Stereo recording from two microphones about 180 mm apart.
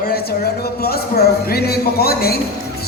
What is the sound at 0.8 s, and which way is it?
Speech, 60° left (ahead or behind).